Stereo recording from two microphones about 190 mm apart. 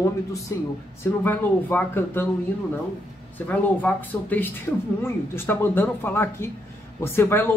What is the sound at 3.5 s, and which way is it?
Speech, 10° left (ahead or behind).